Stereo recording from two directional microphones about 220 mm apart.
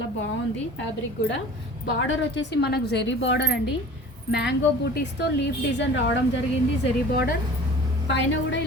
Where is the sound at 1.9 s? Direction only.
55° left (ahead or behind).